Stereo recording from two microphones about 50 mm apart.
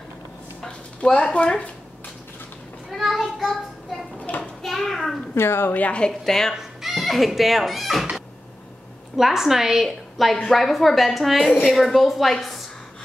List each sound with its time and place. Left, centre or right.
1.1 s speech: left
3.0 s child singing: centre
4.4 s a sound: centre
5.3 s speech: left
5.7 s a woman's voice: left
5.9 s a woman's voice: centre
6.5 s speech: centre
9.1 s a woman's voice: centre